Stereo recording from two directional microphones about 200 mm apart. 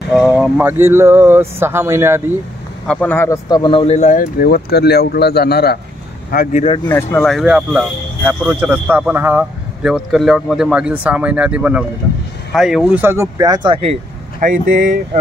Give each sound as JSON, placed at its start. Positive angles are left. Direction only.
{"t": 0.1, "sound": "speech", "side_deg": 0}
{"t": 2.9, "sound": "speech", "side_deg": 10}
{"t": 6.9, "sound": "speech", "side_deg": 10}
{"t": 14.4, "sound": "speech", "side_deg": -45}